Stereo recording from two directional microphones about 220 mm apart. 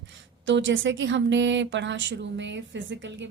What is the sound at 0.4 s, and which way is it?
A woman's voice, 60° right (ahead or behind).